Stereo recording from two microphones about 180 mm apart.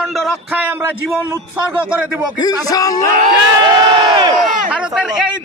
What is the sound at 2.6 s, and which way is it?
Speech, 20° left (ahead or behind).